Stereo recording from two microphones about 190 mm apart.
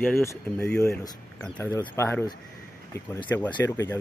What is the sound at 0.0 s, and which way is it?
Speech, 10° left (ahead or behind).